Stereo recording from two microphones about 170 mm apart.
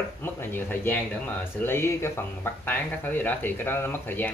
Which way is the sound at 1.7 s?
15° left (ahead or behind).